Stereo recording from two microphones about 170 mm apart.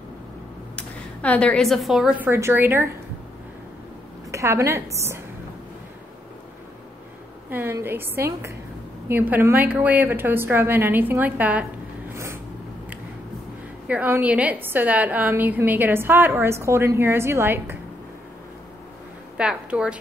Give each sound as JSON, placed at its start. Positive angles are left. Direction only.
{"t": 0.7, "sound": "a woman's voice", "side_deg": 10}
{"t": 4.3, "sound": "a woman's voice", "side_deg": -15}
{"t": 7.4, "sound": "a woman's voice", "side_deg": -10}
{"t": 13.8, "sound": "a woman's voice", "side_deg": -10}
{"t": 19.3, "sound": "a woman's voice", "side_deg": -5}